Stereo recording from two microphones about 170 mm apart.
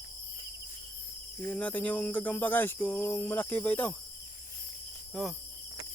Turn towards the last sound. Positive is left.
turn(degrees=0)  # may be behind; listen again after turning